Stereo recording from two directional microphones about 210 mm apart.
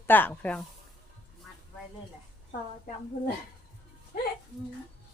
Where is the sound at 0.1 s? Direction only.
10° left (ahead or behind).